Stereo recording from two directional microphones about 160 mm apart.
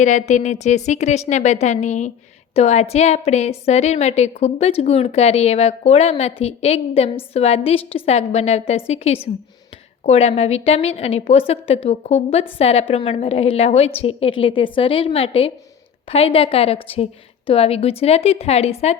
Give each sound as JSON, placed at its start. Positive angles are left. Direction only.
{"t": 0.0, "sound": "a woman's voice", "side_deg": 50}